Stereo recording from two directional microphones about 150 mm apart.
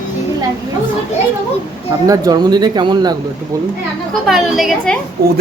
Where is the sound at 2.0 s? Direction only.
25° right (ahead or behind).